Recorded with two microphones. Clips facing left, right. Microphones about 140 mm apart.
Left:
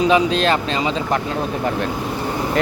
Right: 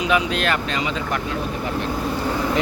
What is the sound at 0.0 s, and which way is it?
Speech, 30° left (ahead or behind).